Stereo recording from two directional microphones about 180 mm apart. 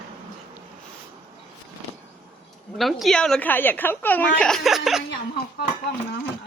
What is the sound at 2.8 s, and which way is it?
Speech, centre (ahead or behind).